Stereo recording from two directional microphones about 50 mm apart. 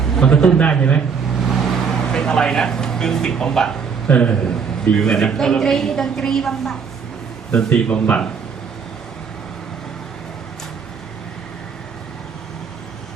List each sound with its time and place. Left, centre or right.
0.4 s a man's voice: left
1.4 s vehicle: centre
4.1 s a man's voice: left; by 6.7 s centre
7.5 s a man's voice: left